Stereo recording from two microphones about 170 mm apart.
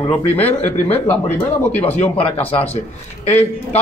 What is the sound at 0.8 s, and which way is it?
Speech, 10° left (ahead or behind).